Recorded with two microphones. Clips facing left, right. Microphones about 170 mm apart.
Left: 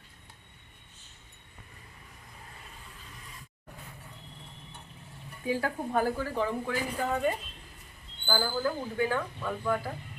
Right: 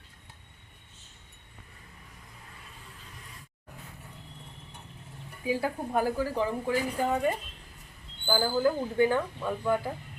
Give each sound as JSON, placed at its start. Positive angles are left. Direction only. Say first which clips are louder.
{"t": 5.5, "sound": "a woman's voice", "louder": "right 1 dB", "side_deg": -10}
{"t": 8.3, "sound": "a woman's voice", "louder": "right 4 dB", "side_deg": -15}